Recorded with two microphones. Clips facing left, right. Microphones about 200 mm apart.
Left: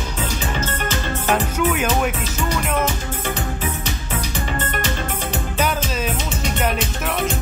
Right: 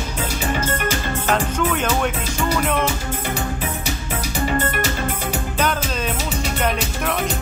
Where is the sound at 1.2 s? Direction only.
10° left (ahead or behind).